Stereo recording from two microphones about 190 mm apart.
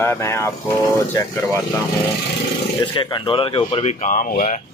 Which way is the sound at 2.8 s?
25° left (ahead or behind).